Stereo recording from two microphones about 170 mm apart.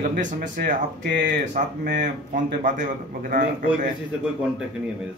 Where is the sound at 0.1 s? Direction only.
55° right (ahead or behind).